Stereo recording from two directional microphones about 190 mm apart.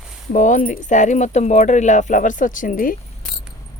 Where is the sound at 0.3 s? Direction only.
45° left (ahead or behind).